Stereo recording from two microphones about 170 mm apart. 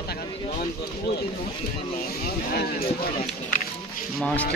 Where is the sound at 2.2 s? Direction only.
65° left (ahead or behind).